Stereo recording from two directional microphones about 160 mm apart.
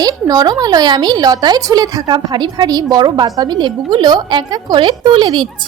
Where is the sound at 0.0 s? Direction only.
25° right (ahead or behind).